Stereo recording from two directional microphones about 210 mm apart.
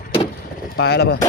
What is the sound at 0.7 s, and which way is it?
Speech, 50° left (ahead or behind).